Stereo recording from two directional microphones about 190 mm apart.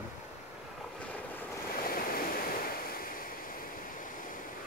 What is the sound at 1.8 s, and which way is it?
Waves, 50° left (ahead or behind).